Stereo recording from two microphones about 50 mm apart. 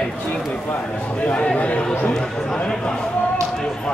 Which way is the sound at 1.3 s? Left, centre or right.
Left.